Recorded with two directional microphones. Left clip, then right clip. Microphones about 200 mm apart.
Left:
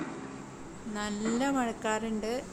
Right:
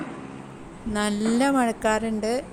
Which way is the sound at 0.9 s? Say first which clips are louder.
Right 9 dB; 40° right (ahead or behind).